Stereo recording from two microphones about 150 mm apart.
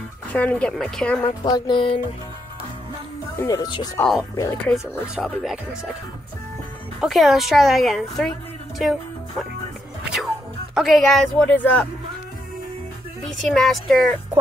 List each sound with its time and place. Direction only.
0.3 s speech: 10° left (ahead or behind)
1.2 s speech: 30° left (ahead or behind)
3.3 s speech: 25° left (ahead or behind)
5.1 s a woman's voice: centre (ahead or behind)
7.0 s a woman's voice: centre (ahead or behind)
10.0 s speech: 5° right (ahead or behind)
13.5 s a woman's voice: 5° left (ahead or behind)